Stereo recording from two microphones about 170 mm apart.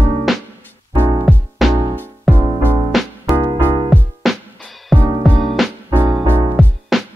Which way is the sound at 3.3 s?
15° right (ahead or behind).